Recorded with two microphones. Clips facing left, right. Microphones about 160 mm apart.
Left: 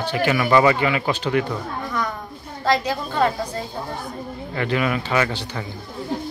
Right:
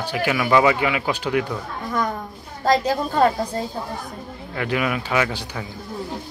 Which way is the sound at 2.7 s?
40° right (ahead or behind).